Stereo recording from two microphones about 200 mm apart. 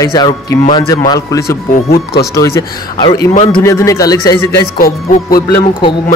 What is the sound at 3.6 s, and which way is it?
Speech, 15° left (ahead or behind).